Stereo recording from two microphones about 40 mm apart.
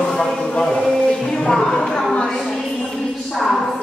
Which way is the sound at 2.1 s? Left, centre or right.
Left.